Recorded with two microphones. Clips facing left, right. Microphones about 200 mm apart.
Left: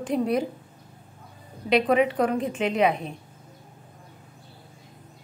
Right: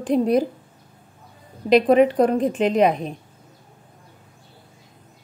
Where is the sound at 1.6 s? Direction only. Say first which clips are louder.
Right 6 dB; 35° right (ahead or behind).